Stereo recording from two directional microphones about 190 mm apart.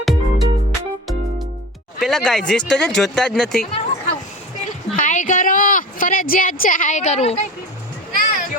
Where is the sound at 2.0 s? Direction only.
Centre (ahead or behind).